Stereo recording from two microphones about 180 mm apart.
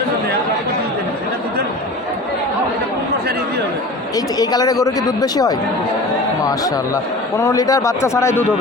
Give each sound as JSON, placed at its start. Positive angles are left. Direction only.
{"t": 4.1, "sound": "a man's voice", "side_deg": 20}